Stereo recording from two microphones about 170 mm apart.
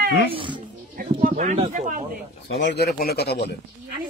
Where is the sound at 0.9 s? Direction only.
60° right (ahead or behind).